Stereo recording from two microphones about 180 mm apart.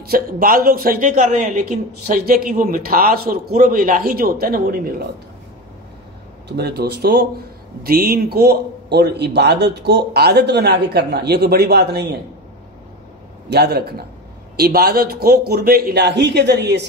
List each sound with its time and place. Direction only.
0.1 s a woman's voice: 50° right (ahead or behind)
6.5 s a man's voice: 65° right (ahead or behind)
13.5 s a man's voice: 65° right (ahead or behind)